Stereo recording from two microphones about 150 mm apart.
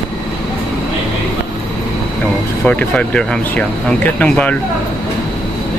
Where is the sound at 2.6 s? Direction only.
10° left (ahead or behind).